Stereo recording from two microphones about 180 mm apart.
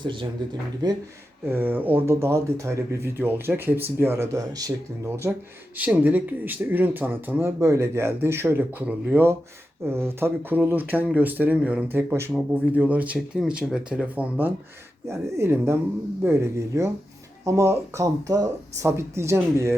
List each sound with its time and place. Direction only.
0.0 s speech: 25° right (ahead or behind)
1.5 s speech: 10° right (ahead or behind)